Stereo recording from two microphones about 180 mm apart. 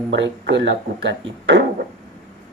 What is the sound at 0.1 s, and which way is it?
Speech, 90° right.